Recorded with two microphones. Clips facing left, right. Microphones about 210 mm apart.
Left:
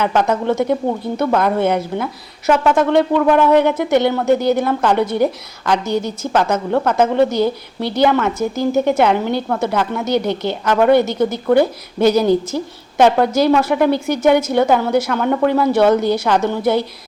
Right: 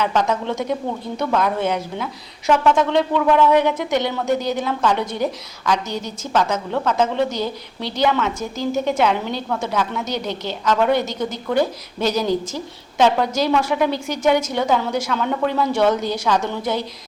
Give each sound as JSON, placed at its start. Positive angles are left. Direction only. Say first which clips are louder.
{"t": 0.0, "sound": "a woman's voice", "louder": "left 4 dB", "side_deg": 55}